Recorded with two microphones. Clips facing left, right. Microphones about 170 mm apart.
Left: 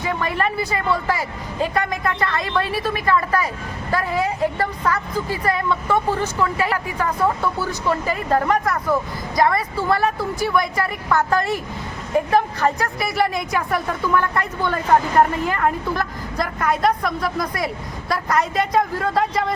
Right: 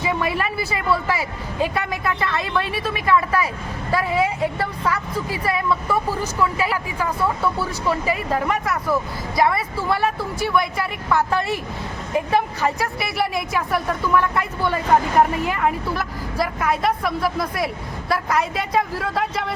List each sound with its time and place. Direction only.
0.1 s speech: 10° right (ahead or behind)